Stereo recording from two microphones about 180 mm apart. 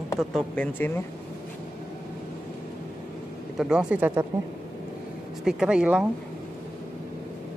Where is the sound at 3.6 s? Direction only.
5° right (ahead or behind).